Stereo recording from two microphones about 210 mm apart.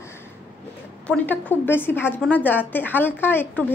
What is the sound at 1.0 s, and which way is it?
A woman's voice, 10° left (ahead or behind).